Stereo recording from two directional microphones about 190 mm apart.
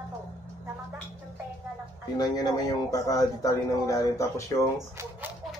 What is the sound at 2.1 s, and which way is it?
Speech, 20° left (ahead or behind).